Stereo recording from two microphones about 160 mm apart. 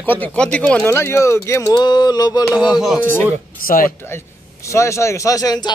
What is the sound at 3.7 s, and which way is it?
Speech, 60° left (ahead or behind).